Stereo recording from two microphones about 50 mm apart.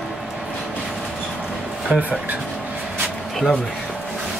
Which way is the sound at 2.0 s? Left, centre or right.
Right.